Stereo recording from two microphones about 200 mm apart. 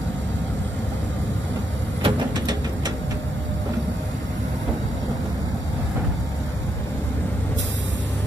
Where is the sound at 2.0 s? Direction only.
20° right (ahead or behind).